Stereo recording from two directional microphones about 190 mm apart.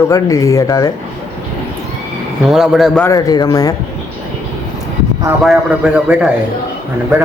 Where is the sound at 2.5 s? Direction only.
Centre (ahead or behind).